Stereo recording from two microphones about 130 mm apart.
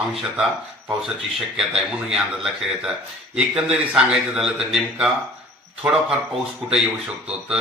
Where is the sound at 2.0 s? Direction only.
5° right (ahead or behind).